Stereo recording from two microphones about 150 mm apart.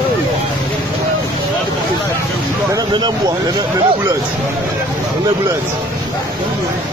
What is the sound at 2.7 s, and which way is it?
Speech, 30° right (ahead or behind).